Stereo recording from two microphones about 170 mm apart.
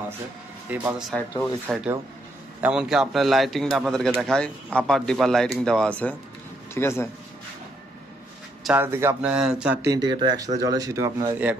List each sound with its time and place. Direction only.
0.7 s speech: 10° right (ahead or behind)
1.1 s a man's voice: 5° left (ahead or behind)
8.6 s speech: 10° right (ahead or behind)
9.8 s speech: 25° right (ahead or behind)